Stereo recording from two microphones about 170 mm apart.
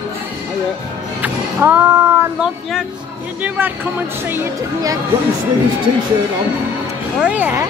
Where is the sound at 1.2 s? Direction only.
10° right (ahead or behind).